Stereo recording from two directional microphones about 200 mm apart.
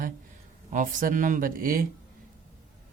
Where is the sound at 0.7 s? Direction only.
40° right (ahead or behind).